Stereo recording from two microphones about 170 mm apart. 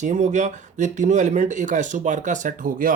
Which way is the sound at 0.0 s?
45° right (ahead or behind).